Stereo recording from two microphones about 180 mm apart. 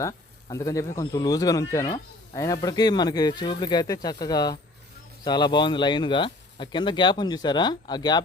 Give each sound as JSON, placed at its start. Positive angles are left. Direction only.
{"t": 0.0, "sound": "speech", "side_deg": 20}